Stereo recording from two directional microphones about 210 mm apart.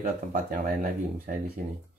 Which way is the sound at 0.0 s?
40° right (ahead or behind).